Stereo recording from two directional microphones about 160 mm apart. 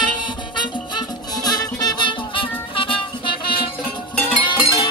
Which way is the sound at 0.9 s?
25° left (ahead or behind).